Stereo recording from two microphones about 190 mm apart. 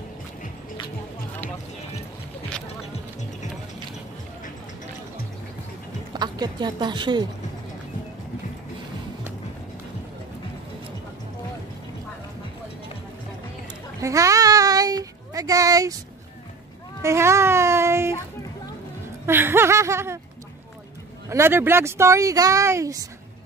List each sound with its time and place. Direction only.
6.1 s a woman's voice: 20° right (ahead or behind)
14.0 s child singing: 15° right (ahead or behind)
17.0 s a sound: 15° right (ahead or behind)
19.2 s speech: 10° right (ahead or behind)
21.3 s speech: 15° right (ahead or behind)